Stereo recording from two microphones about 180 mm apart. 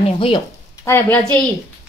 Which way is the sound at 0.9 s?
10° left (ahead or behind).